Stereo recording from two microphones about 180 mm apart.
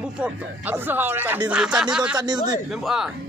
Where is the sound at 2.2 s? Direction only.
25° right (ahead or behind).